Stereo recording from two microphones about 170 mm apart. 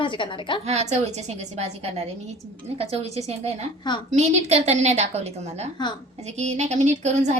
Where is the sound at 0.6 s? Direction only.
40° right (ahead or behind).